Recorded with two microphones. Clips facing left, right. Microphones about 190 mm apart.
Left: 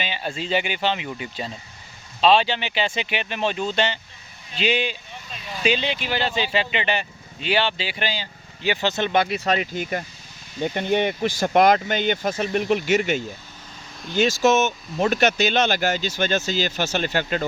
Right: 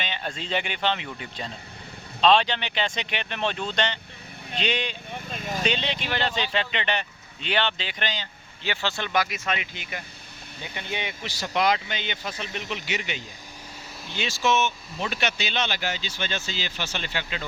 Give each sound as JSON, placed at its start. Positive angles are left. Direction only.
{"t": 0.0, "sound": "speech", "side_deg": 5}
{"t": 5.1, "sound": "vehicle", "side_deg": -50}
{"t": 5.6, "sound": "speech", "side_deg": 5}